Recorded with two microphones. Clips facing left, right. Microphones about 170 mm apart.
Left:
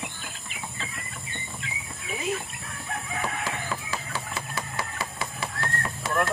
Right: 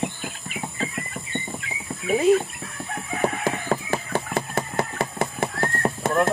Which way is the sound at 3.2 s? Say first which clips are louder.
Right 9 dB; 50° right (ahead or behind).